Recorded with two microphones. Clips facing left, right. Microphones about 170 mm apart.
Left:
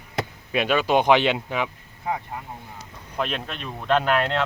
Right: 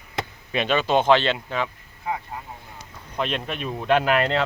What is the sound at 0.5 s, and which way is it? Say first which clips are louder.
Speech: left 1 dB; 5° left (ahead or behind).